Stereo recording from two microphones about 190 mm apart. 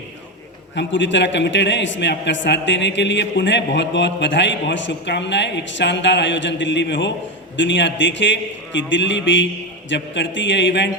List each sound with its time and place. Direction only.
0.8 s a man's voice: 70° left (ahead or behind)